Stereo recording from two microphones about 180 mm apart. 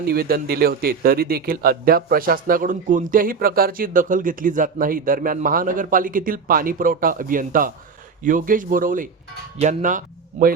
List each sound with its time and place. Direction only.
0.0 s a man's voice: 60° right (ahead or behind); by 10.5 s 40° right (ahead or behind)